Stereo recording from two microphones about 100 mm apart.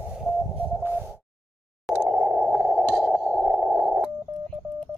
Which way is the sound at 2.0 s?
5° right (ahead or behind).